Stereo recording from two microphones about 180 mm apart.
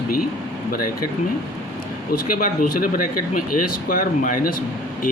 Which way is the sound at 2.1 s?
55° left (ahead or behind).